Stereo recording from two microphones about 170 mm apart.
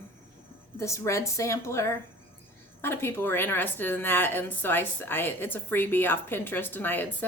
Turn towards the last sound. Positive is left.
turn(degrees=10)  # may be behind; listen again after turning